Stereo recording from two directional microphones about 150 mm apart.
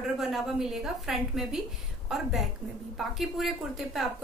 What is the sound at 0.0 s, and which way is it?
A woman's voice, centre (ahead or behind).